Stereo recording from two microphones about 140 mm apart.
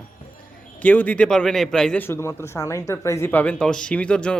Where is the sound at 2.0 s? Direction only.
15° left (ahead or behind).